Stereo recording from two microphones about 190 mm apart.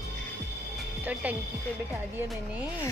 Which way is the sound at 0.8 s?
5° right (ahead or behind).